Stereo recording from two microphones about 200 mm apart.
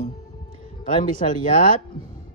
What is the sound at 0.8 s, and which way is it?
Speech, 40° left (ahead or behind).